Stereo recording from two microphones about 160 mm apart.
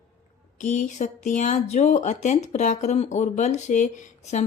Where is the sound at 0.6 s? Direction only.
50° left (ahead or behind).